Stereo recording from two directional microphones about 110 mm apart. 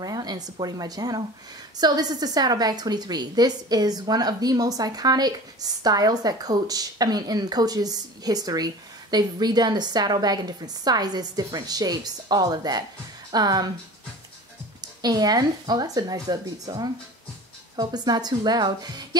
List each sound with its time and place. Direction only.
0.0 s a woman's voice: 35° right (ahead or behind)
14.8 s a woman's voice: 40° right (ahead or behind)